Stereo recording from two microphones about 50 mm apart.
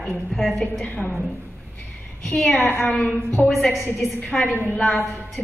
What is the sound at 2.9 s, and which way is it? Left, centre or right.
Speech, left.